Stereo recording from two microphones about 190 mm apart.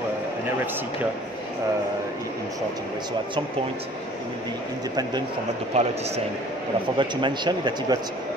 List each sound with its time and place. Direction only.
5.7 s speech: 35° right (ahead or behind)
7.0 s speech: 25° right (ahead or behind)